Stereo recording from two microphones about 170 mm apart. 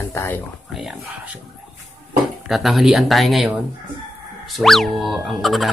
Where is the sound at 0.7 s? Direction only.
Centre (ahead or behind).